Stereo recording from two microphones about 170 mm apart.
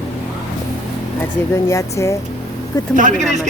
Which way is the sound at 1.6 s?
15° left (ahead or behind).